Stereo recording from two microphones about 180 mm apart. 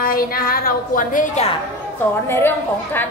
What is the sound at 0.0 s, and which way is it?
A woman's voice, 55° left (ahead or behind).